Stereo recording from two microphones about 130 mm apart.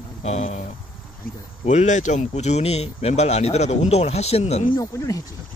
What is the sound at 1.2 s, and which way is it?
Speech, 90° left.